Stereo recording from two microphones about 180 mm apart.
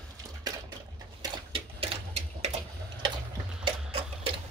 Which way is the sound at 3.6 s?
30° right (ahead or behind).